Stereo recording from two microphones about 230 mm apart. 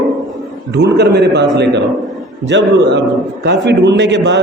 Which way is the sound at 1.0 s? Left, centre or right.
Right.